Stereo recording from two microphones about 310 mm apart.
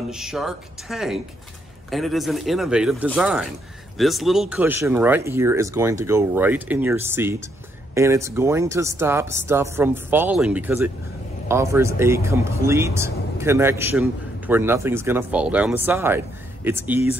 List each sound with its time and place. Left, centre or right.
0.1 s speech: centre